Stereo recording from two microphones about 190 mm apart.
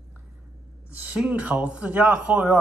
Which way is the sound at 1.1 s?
5° right (ahead or behind).